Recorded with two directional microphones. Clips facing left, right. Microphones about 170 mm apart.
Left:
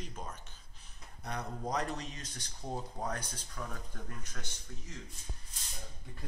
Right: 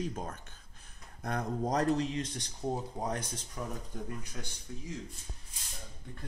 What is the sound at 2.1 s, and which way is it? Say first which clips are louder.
Speech: right 12 dB; 30° right (ahead or behind).